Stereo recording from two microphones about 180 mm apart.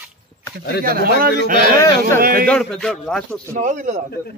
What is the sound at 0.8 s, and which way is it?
A man's voice, 55° right (ahead or behind).